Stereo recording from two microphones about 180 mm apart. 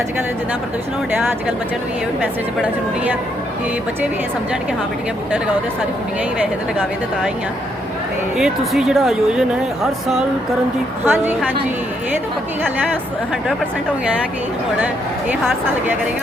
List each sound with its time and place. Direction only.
8.4 s a woman's voice: centre (ahead or behind)